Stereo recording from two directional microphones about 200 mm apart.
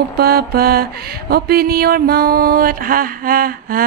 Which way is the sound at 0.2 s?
50° right (ahead or behind).